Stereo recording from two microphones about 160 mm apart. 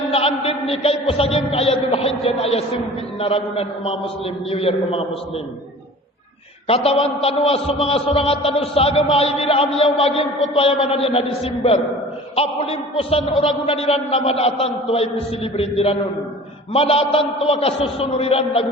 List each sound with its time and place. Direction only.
0.1 s a man's voice: 40° left (ahead or behind)
6.7 s a man's voice: 40° left (ahead or behind)